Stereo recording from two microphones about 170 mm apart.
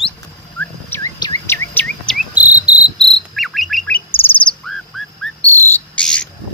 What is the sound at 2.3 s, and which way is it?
Cricket, 10° right (ahead or behind).